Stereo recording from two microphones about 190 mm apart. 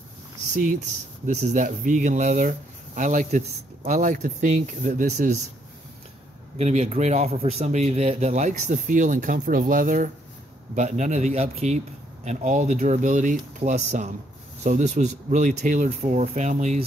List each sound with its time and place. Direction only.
0.7 s speech: 40° right (ahead or behind)
6.6 s speech: 35° right (ahead or behind)